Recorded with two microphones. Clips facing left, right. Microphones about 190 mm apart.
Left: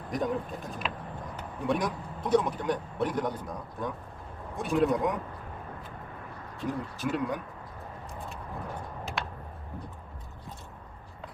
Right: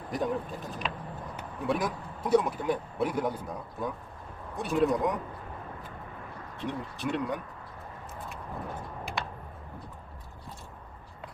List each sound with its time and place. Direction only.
0.1 s speech: centre (ahead or behind)
6.6 s speech: centre (ahead or behind)